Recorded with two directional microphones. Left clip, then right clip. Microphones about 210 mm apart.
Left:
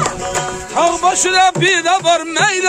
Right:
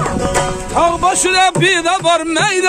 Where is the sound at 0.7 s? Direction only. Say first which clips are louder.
Even; 55° right (ahead or behind).